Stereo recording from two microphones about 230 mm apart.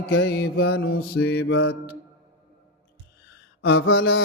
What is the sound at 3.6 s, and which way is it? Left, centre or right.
Mantra, left.